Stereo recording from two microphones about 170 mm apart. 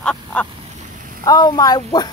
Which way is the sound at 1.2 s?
25° left (ahead or behind).